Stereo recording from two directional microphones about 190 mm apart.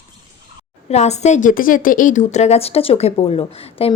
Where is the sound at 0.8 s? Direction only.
35° left (ahead or behind).